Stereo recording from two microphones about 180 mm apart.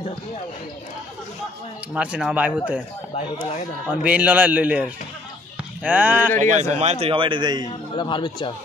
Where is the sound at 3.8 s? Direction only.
10° right (ahead or behind).